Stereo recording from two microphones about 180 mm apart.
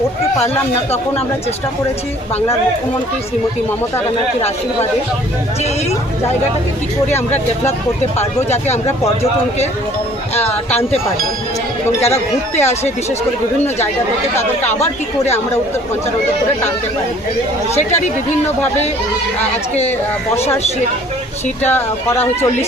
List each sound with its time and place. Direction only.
0.7 s speech: 35° left (ahead or behind)
8.2 s speech: 40° left (ahead or behind)
10.3 s speech: 35° left (ahead or behind)
12.0 s speech: 35° left (ahead or behind)
17.7 s speech: 40° left (ahead or behind)
21.7 s speech: 10° left (ahead or behind)